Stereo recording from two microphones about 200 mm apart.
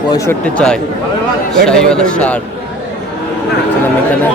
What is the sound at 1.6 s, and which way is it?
Speech, 5° left (ahead or behind).